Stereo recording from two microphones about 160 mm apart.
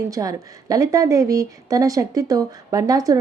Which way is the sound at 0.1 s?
20° right (ahead or behind).